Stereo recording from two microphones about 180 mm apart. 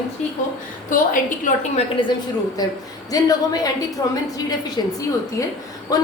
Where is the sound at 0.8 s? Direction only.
45° left (ahead or behind).